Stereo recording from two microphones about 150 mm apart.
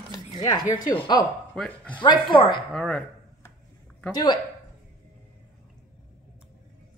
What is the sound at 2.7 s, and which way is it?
Speech, 5° left (ahead or behind).